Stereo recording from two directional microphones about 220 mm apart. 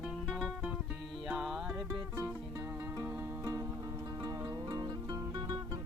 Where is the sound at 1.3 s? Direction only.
5° right (ahead or behind).